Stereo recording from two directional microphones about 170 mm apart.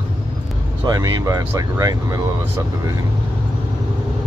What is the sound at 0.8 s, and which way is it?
Speech, 25° right (ahead or behind).